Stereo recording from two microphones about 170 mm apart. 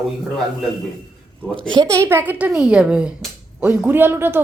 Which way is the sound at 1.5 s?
25° right (ahead or behind).